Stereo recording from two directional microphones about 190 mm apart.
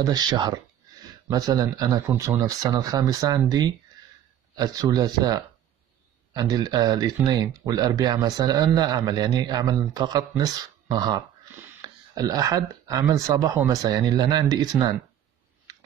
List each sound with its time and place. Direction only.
0.0 s speech: 20° right (ahead or behind)